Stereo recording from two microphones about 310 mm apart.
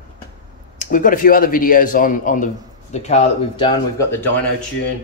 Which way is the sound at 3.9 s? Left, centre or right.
Centre.